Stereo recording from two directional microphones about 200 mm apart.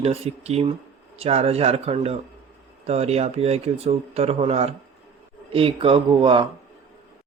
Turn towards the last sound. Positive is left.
turn(degrees=-25)  # may be behind; listen again after turning